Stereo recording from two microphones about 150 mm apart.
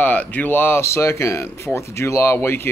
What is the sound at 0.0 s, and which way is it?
Speech, 10° left (ahead or behind).